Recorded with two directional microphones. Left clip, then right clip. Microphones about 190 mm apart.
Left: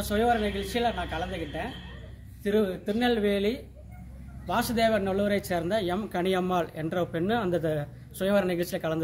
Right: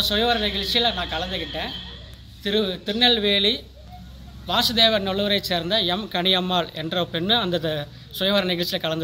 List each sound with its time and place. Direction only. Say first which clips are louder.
0.1 s a man's voice: right 4 dB; 15° left (ahead or behind)